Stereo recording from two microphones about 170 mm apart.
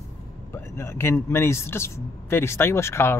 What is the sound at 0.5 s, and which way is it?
Speech, 15° left (ahead or behind).